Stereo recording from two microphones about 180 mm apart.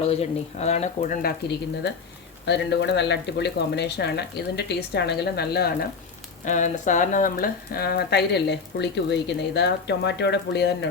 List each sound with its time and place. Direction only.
0.0 s speech: 35° left (ahead or behind); by 5.9 s 60° left (ahead or behind)
6.4 s speech: 45° left (ahead or behind); by 10.8 s 70° left (ahead or behind)